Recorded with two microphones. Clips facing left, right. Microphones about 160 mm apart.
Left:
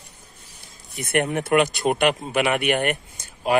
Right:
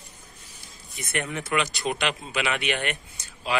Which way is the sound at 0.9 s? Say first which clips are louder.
Left 8 dB; 60° left (ahead or behind).